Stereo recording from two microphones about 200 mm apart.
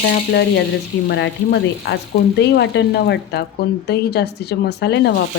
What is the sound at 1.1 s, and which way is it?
Speech, 55° left (ahead or behind).